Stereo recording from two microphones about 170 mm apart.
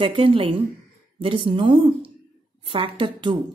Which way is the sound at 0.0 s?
35° right (ahead or behind).